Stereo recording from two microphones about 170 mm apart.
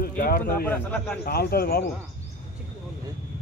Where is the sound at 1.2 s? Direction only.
65° left (ahead or behind).